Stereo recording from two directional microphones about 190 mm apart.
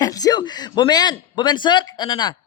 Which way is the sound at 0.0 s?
20° left (ahead or behind).